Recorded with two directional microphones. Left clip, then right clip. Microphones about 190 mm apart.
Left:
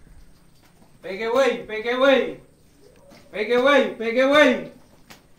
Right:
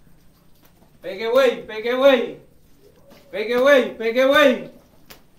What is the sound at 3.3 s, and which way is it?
A man's voice, 20° right (ahead or behind).